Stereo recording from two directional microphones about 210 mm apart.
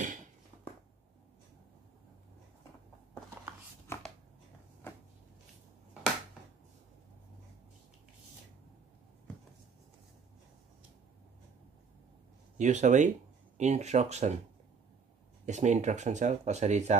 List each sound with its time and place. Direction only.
3.8 s dog: 10° left (ahead or behind)
12.5 s speech: 35° right (ahead or behind)
15.4 s speech: 35° right (ahead or behind)